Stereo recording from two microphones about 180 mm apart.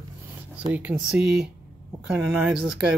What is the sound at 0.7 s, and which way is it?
Speech, 5° right (ahead or behind).